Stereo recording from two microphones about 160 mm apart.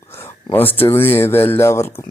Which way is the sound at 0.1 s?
15° left (ahead or behind).